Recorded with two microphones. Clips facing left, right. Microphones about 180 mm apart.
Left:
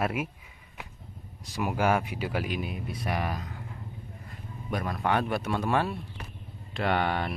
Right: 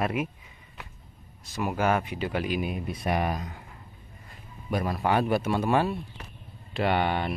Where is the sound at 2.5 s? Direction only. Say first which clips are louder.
Right 4 dB; 20° right (ahead or behind).